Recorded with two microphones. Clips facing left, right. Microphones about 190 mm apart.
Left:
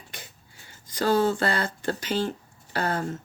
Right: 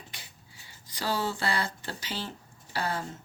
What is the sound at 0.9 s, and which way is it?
Speech, 50° left (ahead or behind).